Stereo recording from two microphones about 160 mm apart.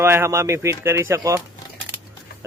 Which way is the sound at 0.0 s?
15° right (ahead or behind).